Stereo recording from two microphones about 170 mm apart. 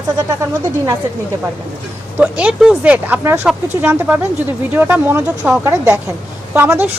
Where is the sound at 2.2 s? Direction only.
5° right (ahead or behind).